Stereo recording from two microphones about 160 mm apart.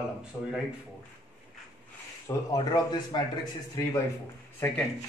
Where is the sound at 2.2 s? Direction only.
25° left (ahead or behind).